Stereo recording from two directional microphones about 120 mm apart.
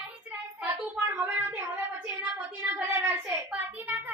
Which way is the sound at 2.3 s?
15° right (ahead or behind).